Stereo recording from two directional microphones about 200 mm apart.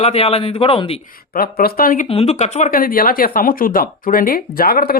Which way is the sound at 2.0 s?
30° left (ahead or behind).